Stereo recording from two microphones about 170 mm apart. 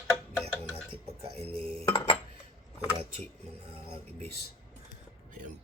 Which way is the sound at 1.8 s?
10° left (ahead or behind).